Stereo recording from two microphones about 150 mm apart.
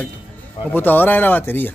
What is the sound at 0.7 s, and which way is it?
Speech, 10° left (ahead or behind).